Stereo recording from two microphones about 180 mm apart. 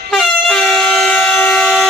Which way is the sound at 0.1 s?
Centre (ahead or behind).